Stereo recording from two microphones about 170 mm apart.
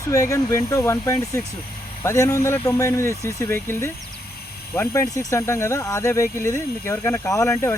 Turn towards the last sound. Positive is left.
turn(degrees=15)  # may be behind; listen again after turning